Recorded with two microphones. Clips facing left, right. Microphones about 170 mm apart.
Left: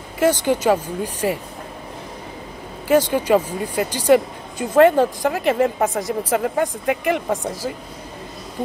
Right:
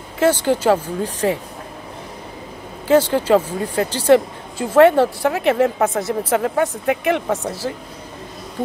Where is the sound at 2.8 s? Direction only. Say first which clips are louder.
Right 2 dB; 15° left (ahead or behind).